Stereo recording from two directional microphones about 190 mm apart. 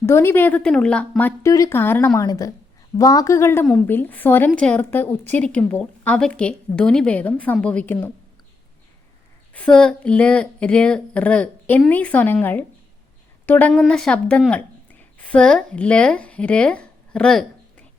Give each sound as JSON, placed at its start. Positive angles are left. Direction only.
{"t": 0.0, "sound": "a woman's voice", "side_deg": 15}
{"t": 9.5, "sound": "a woman's voice", "side_deg": 5}